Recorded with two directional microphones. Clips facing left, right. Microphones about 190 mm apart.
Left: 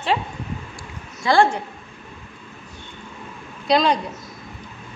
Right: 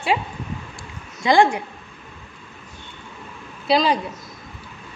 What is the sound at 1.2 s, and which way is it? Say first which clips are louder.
Speech: right 1 dB; 15° right (ahead or behind).